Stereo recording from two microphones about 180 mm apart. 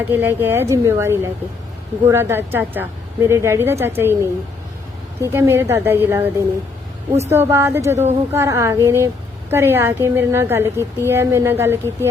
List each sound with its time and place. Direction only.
0.0 s a woman's voice: 10° right (ahead or behind)